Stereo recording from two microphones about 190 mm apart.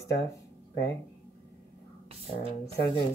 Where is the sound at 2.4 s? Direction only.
30° right (ahead or behind).